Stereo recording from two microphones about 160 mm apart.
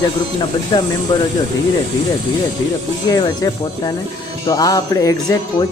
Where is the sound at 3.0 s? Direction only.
25° left (ahead or behind).